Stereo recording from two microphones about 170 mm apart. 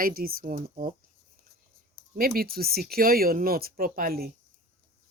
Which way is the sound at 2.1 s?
60° right (ahead or behind).